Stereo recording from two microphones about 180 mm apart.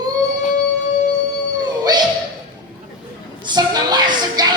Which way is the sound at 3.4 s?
25° right (ahead or behind).